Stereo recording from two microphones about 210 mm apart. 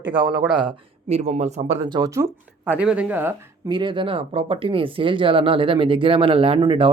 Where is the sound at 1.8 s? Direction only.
20° right (ahead or behind).